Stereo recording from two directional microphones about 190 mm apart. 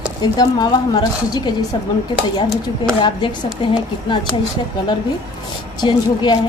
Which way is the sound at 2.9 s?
25° left (ahead or behind).